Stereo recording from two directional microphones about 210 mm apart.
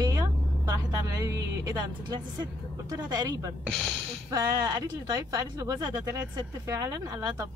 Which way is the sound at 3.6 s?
Centre (ahead or behind).